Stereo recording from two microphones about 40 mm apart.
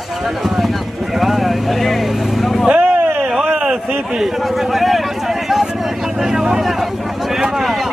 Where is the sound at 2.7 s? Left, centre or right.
Right.